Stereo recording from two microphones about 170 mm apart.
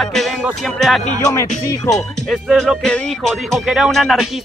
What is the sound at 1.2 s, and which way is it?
Music, 20° left (ahead or behind).